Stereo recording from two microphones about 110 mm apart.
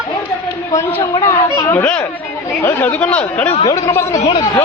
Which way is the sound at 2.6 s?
20° left (ahead or behind).